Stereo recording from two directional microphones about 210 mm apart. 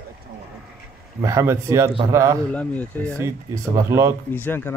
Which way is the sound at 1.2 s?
15° right (ahead or behind).